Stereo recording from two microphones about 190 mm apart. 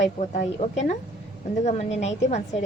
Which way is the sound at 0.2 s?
35° left (ahead or behind).